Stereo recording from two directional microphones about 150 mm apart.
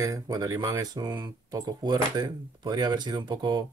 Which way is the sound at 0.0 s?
25° right (ahead or behind).